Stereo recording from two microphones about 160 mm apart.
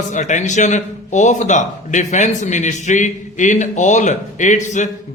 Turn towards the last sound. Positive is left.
turn(degrees=50)  # may be behind; listen again after turning